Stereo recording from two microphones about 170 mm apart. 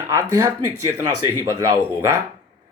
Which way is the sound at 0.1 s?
15° right (ahead or behind).